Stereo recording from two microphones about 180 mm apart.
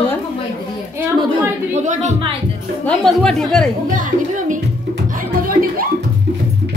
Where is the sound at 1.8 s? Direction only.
40° right (ahead or behind).